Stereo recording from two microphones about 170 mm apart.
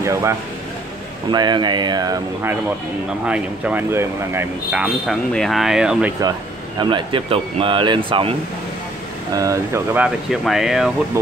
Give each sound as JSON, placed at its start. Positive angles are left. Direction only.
{"t": 0.0, "sound": "speech", "side_deg": -15}
{"t": 3.3, "sound": "speech", "side_deg": -10}
{"t": 4.8, "sound": "a sound", "side_deg": 0}
{"t": 6.8, "sound": "speech", "side_deg": -30}
{"t": 9.3, "sound": "speech", "side_deg": -20}
{"t": 9.9, "sound": "a sound", "side_deg": -5}